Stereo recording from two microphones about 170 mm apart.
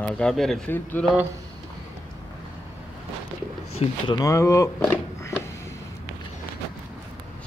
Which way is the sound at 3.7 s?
35° left (ahead or behind).